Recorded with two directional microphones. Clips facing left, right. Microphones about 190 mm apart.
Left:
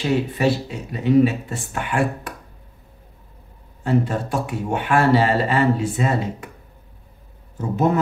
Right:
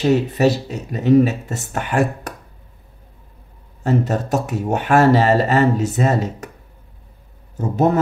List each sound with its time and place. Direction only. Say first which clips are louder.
0.0 s speech: right 4 dB; 45° right (ahead or behind)
3.8 s speech: right 2 dB; 45° right (ahead or behind)
7.7 s speech: right 3 dB; 40° right (ahead or behind)